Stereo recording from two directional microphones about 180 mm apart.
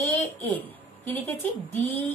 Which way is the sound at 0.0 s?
10° left (ahead or behind).